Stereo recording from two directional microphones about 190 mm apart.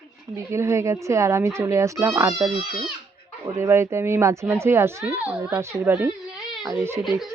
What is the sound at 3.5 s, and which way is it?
Speech, 15° right (ahead or behind).